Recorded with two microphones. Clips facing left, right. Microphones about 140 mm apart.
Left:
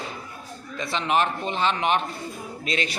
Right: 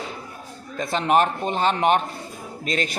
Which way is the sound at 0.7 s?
50° right (ahead or behind).